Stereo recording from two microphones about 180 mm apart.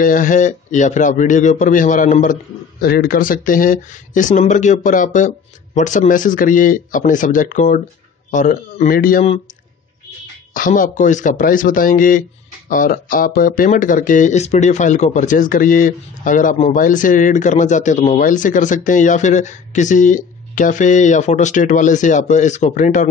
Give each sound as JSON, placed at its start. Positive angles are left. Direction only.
{"t": 0.0, "sound": "a man's voice", "side_deg": 50}
{"t": 2.8, "sound": "a man's voice", "side_deg": 60}
{"t": 10.5, "sound": "a man's voice", "side_deg": 50}